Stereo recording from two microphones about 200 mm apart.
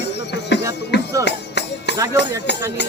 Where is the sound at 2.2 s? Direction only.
60° left (ahead or behind).